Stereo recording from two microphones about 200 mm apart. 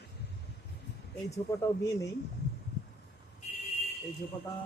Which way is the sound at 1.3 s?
15° left (ahead or behind).